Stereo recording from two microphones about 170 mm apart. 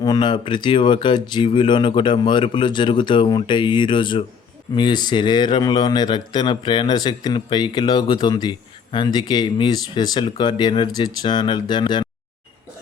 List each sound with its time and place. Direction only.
0.0 s a man's voice: 25° left (ahead or behind)